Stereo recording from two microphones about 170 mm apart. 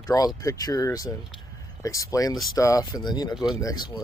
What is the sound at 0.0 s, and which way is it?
Speech, 20° left (ahead or behind).